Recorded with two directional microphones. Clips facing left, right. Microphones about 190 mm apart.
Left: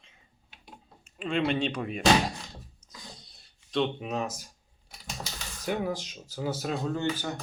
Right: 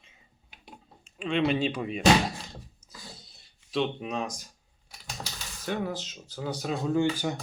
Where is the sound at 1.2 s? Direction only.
Centre (ahead or behind).